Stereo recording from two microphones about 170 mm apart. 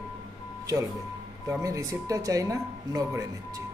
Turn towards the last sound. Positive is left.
turn(degrees=-20)  # may be behind; listen again after turning